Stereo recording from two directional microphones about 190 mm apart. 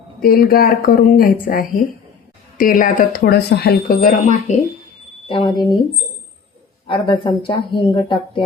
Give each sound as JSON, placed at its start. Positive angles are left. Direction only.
{"t": 0.2, "sound": "speech", "side_deg": 50}
{"t": 5.3, "sound": "a woman's voice", "side_deg": 25}
{"t": 6.8, "sound": "a woman's voice", "side_deg": 25}